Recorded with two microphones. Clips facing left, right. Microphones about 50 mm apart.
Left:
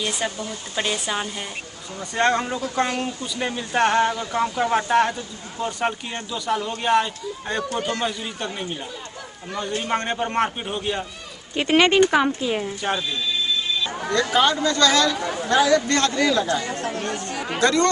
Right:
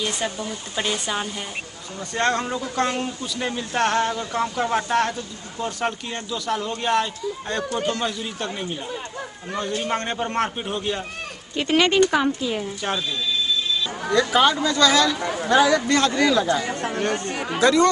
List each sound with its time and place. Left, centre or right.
0.0 s speech: centre
9.8 s speech: centre
11.5 s speech: left
14.3 s speech: centre
17.0 s speech: right
17.6 s speech: centre